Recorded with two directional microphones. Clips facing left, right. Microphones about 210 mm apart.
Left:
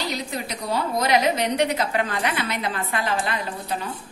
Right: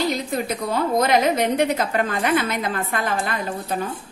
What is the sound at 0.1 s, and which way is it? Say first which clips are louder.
A woman's voice: right 5 dB; 50° right (ahead or behind).